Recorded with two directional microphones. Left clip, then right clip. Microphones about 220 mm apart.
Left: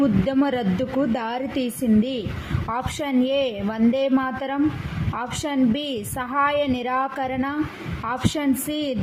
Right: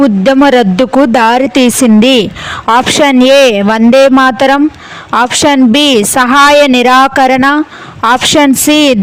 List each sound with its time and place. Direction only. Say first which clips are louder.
0.3 s a woman's voice: right 17 dB; 45° right (ahead or behind)